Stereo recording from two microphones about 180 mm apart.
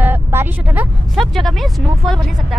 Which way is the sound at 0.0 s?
10° right (ahead or behind).